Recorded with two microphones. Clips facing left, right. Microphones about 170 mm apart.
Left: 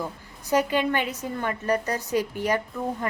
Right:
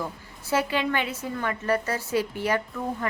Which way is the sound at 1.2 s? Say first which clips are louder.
Left 1 dB; 20° left (ahead or behind).